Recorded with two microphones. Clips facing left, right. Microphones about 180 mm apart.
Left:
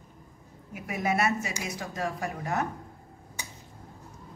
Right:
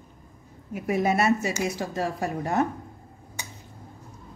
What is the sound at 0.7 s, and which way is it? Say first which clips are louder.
Speech: right 6 dB; 30° right (ahead or behind).